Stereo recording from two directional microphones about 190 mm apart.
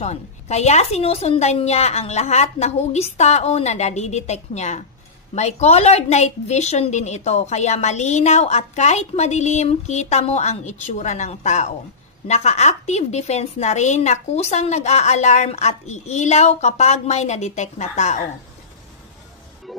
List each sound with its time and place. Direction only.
0.0 s a woman's voice: 35° left (ahead or behind)